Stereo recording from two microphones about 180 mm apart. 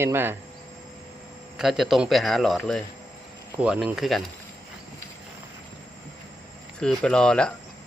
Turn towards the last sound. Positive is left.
turn(degrees=5)  # may be behind; listen again after turning